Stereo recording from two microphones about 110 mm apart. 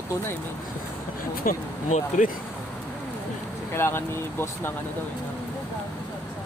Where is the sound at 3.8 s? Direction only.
20° left (ahead or behind).